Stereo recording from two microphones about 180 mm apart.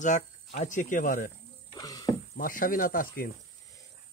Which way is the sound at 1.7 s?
20° left (ahead or behind).